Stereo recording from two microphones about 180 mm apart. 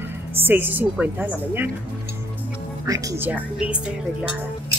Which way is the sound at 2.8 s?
20° right (ahead or behind).